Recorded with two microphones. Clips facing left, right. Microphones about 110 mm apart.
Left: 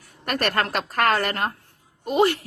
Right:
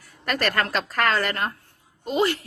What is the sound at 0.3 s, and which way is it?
A woman's voice, 30° left (ahead or behind).